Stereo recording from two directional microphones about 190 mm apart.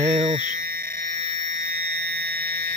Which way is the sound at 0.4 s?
45° right (ahead or behind).